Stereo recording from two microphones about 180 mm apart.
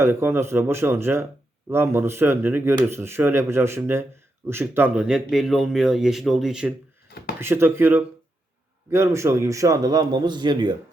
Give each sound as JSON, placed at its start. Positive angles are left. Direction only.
{"t": 0.0, "sound": "a man's voice", "side_deg": -15}